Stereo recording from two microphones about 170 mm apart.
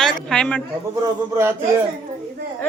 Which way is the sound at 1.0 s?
15° right (ahead or behind).